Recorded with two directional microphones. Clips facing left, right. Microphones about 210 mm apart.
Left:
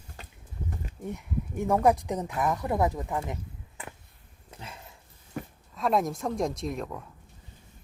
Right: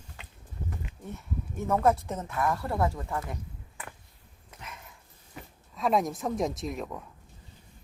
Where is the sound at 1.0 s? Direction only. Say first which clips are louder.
Left 5 dB; 15° left (ahead or behind).